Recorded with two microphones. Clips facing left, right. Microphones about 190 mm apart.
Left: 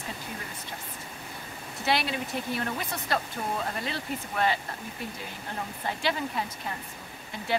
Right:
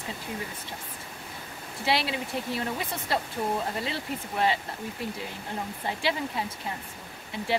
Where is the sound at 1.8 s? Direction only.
25° right (ahead or behind).